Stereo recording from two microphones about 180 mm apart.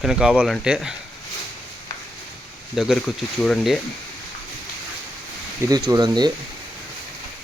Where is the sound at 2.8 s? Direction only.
Centre (ahead or behind).